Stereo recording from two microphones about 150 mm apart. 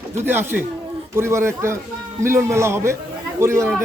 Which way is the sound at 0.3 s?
15° right (ahead or behind).